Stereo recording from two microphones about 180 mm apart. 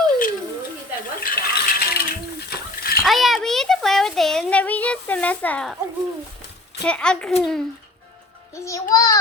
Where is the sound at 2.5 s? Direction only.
60° left (ahead or behind).